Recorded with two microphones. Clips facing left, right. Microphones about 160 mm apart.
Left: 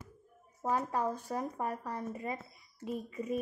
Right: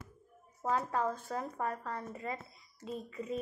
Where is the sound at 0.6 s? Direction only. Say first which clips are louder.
Even; 15° left (ahead or behind).